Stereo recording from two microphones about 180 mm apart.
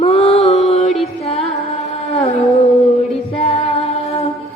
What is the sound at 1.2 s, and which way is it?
Music, 35° left (ahead or behind).